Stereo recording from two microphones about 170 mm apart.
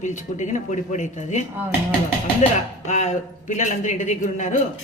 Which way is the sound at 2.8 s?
40° left (ahead or behind).